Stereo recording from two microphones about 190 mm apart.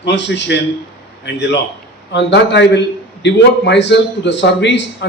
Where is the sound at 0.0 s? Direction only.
65° left (ahead or behind).